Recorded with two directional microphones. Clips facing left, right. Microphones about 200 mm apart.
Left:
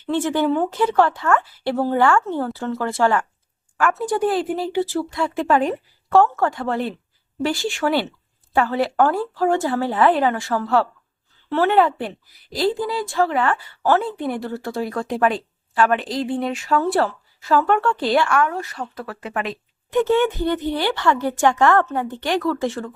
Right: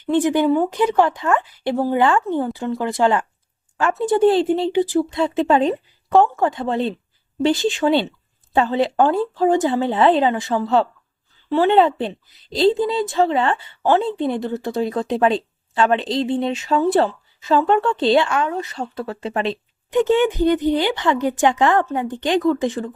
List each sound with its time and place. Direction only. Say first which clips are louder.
0.0 s a woman's voice: right 3 dB; 15° right (ahead or behind)
19.9 s speech: right 1 dB; 20° right (ahead or behind)